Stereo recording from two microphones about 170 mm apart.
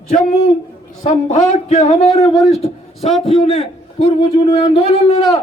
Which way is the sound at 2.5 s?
40° left (ahead or behind).